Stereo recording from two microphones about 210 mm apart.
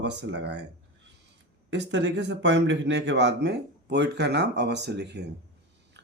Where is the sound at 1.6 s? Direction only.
60° right (ahead or behind).